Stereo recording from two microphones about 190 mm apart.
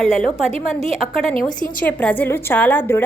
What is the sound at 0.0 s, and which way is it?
A woman's voice, 5° left (ahead or behind).